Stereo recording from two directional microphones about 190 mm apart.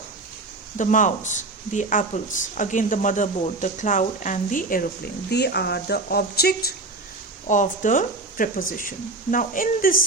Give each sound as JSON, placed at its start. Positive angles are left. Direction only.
{"t": 0.8, "sound": "speech", "side_deg": 40}
{"t": 5.3, "sound": "speech", "side_deg": 60}
{"t": 7.4, "sound": "speech", "side_deg": 40}